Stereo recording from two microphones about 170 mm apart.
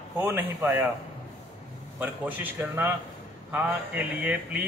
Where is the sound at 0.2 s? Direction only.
10° right (ahead or behind).